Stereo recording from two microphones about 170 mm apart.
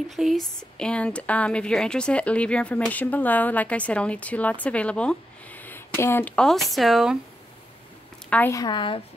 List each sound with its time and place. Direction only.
0.1 s speech: centre (ahead or behind)
8.3 s a woman's voice: 15° left (ahead or behind)